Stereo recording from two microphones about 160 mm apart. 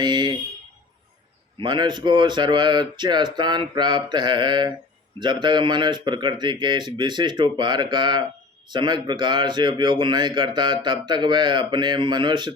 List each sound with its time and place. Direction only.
0.0 s a man's voice: 25° right (ahead or behind)
1.5 s a man's voice: 30° right (ahead or behind)